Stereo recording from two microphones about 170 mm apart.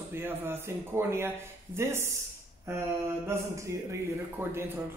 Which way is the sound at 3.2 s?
15° right (ahead or behind).